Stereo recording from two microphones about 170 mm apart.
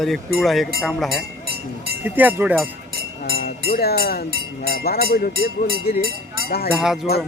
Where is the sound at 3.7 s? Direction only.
65° left (ahead or behind).